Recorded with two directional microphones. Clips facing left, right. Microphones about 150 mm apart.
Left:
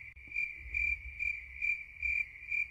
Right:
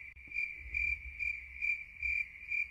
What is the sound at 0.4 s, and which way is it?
Cricket, 20° left (ahead or behind).